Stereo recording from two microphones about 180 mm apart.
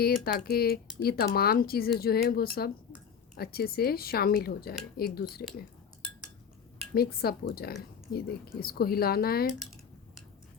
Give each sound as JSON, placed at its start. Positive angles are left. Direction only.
{"t": 0.0, "sound": "speech", "side_deg": 55}
{"t": 6.9, "sound": "speech", "side_deg": 60}